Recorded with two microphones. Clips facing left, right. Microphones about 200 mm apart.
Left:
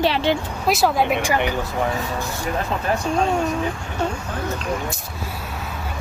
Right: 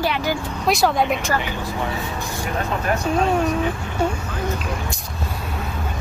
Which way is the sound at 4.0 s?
10° right (ahead or behind).